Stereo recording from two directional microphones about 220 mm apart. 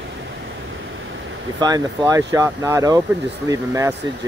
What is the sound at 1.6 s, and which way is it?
Speech, 15° right (ahead or behind).